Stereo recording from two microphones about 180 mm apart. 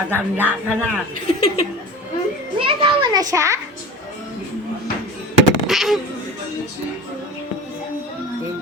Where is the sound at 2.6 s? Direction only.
30° right (ahead or behind).